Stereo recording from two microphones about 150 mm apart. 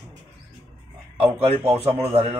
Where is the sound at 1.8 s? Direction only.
40° right (ahead or behind).